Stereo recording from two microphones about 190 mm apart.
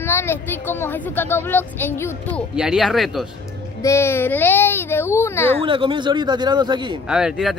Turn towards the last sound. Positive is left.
turn(degrees=-5)  # may be behind; listen again after turning